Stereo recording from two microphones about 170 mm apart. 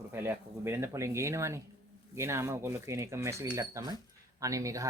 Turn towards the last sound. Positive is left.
turn(degrees=-20)  # may be behind; listen again after turning